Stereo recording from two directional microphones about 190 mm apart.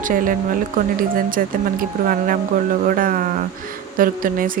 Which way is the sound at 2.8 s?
45° right (ahead or behind).